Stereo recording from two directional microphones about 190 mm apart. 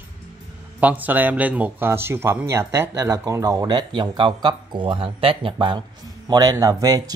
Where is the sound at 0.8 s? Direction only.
10° right (ahead or behind).